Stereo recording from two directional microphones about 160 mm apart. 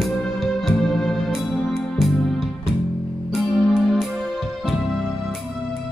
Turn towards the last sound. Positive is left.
turn(degrees=0)  # may be behind; listen again after turning